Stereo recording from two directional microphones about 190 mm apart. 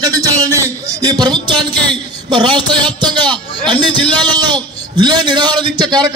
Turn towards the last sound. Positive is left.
turn(degrees=-20)  # may be behind; listen again after turning